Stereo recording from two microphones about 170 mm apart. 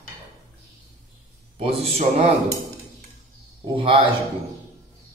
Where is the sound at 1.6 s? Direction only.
35° right (ahead or behind).